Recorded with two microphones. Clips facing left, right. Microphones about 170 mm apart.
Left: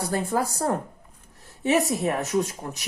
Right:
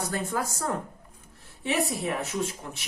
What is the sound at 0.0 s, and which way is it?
A woman's voice, 35° left (ahead or behind).